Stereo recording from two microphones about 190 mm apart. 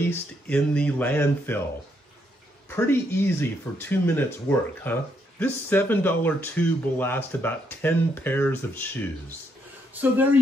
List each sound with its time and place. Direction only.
0.1 s speech: 5° left (ahead or behind)
2.7 s speech: 15° left (ahead or behind)
9.9 s speech: 10° right (ahead or behind)